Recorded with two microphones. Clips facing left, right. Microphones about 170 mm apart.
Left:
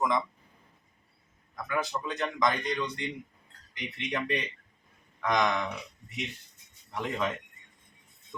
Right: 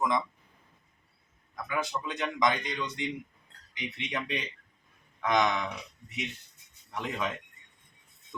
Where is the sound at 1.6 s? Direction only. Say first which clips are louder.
Left 1 dB; 5° right (ahead or behind).